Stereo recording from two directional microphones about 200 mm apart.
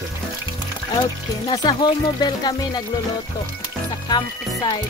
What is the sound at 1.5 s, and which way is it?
Speech, 20° left (ahead or behind).